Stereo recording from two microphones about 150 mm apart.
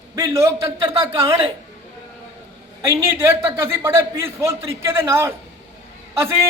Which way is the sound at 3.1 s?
15° right (ahead or behind).